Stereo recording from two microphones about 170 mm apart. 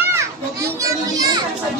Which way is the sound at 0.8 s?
20° right (ahead or behind).